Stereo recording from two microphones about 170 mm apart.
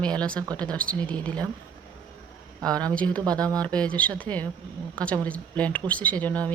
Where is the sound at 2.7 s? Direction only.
5° left (ahead or behind).